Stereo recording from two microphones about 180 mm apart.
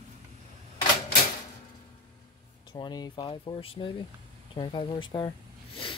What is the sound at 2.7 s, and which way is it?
Speech, 25° left (ahead or behind).